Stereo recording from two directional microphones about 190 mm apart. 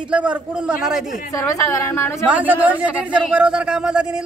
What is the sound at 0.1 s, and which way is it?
Speech, 5° right (ahead or behind).